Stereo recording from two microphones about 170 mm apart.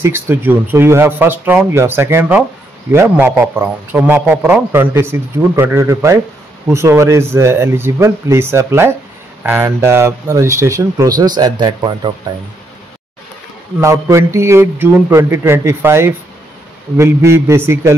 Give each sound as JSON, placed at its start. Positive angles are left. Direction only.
{"t": 0.0, "sound": "a man's voice", "side_deg": -15}
{"t": 13.7, "sound": "a man's voice", "side_deg": -15}